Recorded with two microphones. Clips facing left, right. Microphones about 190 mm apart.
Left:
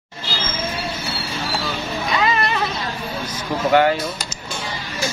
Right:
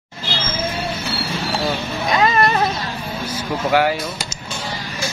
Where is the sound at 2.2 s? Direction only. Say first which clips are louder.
Right 5 dB; 45° right (ahead or behind).